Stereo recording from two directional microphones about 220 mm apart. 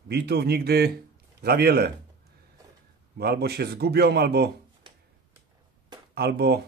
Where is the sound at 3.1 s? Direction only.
45° right (ahead or behind).